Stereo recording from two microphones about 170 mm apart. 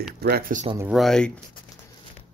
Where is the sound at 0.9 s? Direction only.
5° left (ahead or behind).